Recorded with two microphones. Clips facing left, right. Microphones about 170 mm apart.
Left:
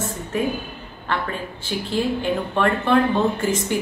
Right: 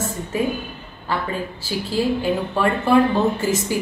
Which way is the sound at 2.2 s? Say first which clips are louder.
Right 1 dB; 5° right (ahead or behind).